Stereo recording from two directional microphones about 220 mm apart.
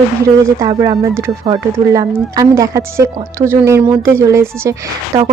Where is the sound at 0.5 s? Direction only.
15° right (ahead or behind).